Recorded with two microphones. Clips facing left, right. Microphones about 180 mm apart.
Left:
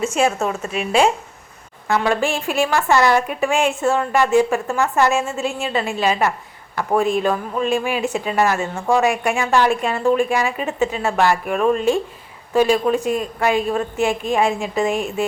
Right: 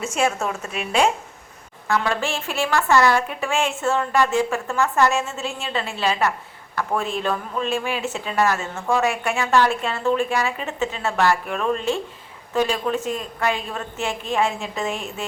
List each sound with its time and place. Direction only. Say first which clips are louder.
0.0 s a woman's voice: left 4 dB; 10° left (ahead or behind)
1.9 s a woman's voice: left 4 dB; 15° left (ahead or behind)